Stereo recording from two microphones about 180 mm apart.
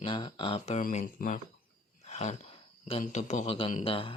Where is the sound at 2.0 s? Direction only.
40° left (ahead or behind).